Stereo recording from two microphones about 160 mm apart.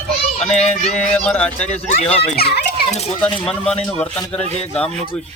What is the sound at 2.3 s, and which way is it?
Speech, 80° left.